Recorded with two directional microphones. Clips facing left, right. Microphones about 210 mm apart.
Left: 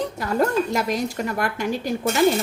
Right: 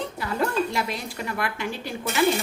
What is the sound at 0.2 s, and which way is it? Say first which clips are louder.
A woman's voice: left 4 dB; 45° left (ahead or behind).